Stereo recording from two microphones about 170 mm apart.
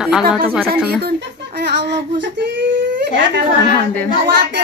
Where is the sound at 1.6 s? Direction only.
80° right.